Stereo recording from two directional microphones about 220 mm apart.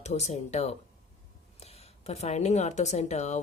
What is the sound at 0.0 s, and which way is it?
A woman's voice, 30° left (ahead or behind).